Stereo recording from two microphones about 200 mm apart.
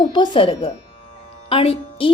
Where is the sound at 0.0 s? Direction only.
25° left (ahead or behind).